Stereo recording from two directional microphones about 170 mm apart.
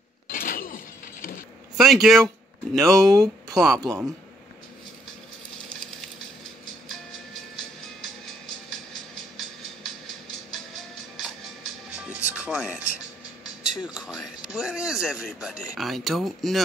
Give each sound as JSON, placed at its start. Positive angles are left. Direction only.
{"t": 0.3, "sound": "breaking", "side_deg": 55}
{"t": 1.8, "sound": "speech", "side_deg": 0}
{"t": 3.8, "sound": "a man's voice", "side_deg": -20}
{"t": 6.9, "sound": "music", "side_deg": 0}
{"t": 11.1, "sound": "music", "side_deg": 0}
{"t": 13.6, "sound": "speech", "side_deg": -5}